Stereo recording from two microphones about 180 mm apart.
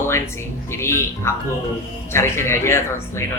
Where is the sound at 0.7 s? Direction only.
15° left (ahead or behind).